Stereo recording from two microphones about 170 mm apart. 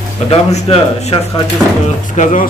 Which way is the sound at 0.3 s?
40° left (ahead or behind).